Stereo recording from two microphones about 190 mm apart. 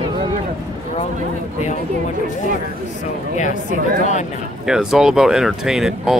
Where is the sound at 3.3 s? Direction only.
40° left (ahead or behind).